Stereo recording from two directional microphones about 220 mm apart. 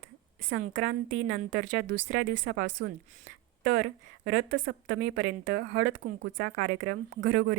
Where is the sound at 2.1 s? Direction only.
40° right (ahead or behind).